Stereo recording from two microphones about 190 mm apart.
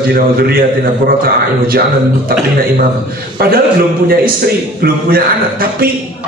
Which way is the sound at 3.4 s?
50° right (ahead or behind).